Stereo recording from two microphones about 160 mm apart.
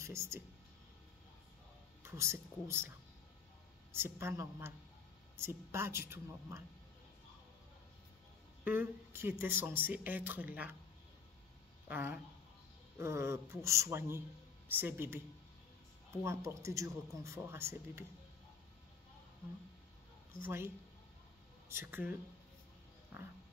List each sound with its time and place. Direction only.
0.0 s speech: 15° right (ahead or behind)
2.0 s speech: 15° right (ahead or behind)
3.9 s speech: 15° right (ahead or behind)
8.6 s speech: 15° right (ahead or behind)
11.9 s speech: 10° right (ahead or behind)
16.3 s speech: 20° right (ahead or behind)
20.4 s speech: 15° right (ahead or behind)